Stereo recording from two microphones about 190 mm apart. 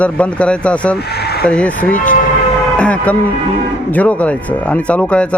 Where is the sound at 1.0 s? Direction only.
60° left (ahead or behind).